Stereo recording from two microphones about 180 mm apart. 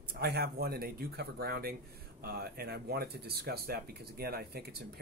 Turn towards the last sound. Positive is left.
turn(degrees=-60)  # may be behind; listen again after turning